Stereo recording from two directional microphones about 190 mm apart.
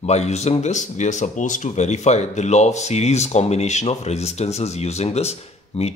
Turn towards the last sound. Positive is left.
turn(degrees=35)  # may be behind; listen again after turning